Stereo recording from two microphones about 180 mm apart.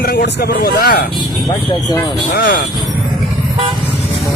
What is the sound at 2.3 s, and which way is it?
Speech, 50° left (ahead or behind).